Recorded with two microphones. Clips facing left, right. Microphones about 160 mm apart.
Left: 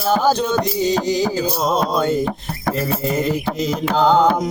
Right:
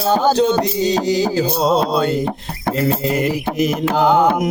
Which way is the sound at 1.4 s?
30° right (ahead or behind).